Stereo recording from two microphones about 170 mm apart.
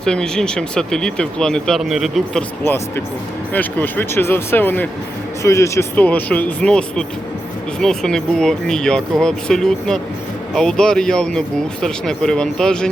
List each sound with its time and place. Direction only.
0.0 s speech: 5° left (ahead or behind)
2.6 s speech: 15° left (ahead or behind)